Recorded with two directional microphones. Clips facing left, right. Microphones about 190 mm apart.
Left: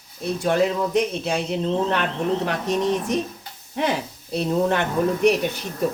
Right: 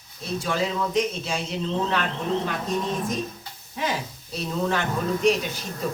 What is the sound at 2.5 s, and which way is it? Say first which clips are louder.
Speech: left 5 dB; 75° left (ahead or behind).